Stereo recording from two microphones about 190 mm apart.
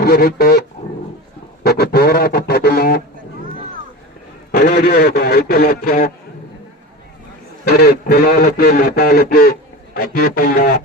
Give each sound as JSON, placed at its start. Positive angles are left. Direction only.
{"t": 0.0, "sound": "speech", "side_deg": 55}
{"t": 1.6, "sound": "a sound", "side_deg": 55}
{"t": 4.5, "sound": "speech", "side_deg": 55}
{"t": 7.6, "sound": "speech", "side_deg": 50}